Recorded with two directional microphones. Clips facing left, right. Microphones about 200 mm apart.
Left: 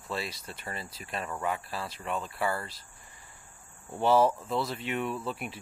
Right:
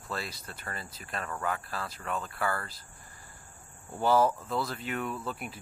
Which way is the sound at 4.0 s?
25° left (ahead or behind).